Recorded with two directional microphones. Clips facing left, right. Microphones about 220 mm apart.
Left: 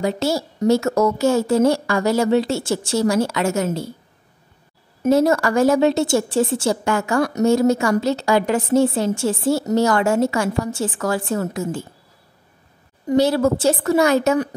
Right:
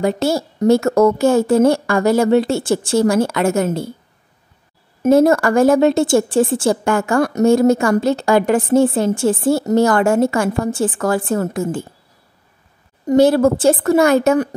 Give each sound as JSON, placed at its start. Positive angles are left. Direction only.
{"t": 0.0, "sound": "a woman's voice", "side_deg": -55}
{"t": 5.0, "sound": "a woman's voice", "side_deg": -50}
{"t": 13.0, "sound": "a woman's voice", "side_deg": -50}